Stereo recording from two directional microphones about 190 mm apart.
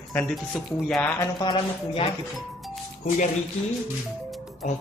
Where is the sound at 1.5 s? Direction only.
30° left (ahead or behind).